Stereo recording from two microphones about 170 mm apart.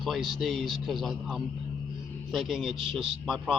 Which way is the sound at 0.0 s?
Centre (ahead or behind).